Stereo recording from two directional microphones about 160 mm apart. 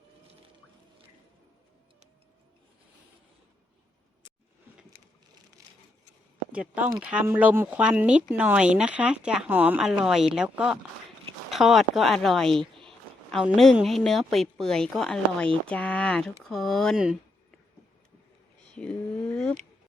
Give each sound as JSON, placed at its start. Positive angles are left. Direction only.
{"t": 5.6, "sound": "a sound", "side_deg": -20}
{"t": 6.5, "sound": "a woman's voice", "side_deg": -10}
{"t": 18.7, "sound": "speech", "side_deg": 5}